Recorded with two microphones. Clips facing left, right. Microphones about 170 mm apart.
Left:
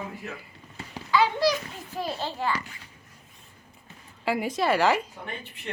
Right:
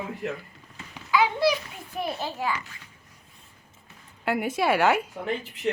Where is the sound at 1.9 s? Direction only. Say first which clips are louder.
Right 1 dB; 10° right (ahead or behind).